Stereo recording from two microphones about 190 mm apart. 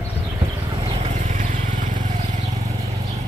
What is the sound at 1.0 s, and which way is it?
Vehicle, 40° right (ahead or behind).